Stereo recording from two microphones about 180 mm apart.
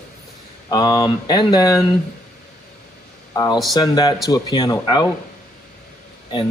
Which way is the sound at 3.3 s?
20° left (ahead or behind).